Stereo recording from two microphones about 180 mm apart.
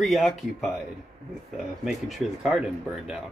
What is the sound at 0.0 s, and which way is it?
Speech, centre (ahead or behind).